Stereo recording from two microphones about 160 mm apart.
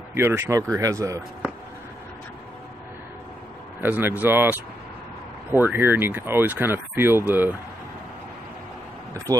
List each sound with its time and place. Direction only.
0.1 s speech: 15° right (ahead or behind)
3.8 s speech: 10° right (ahead or behind)
9.1 s speech: 20° right (ahead or behind)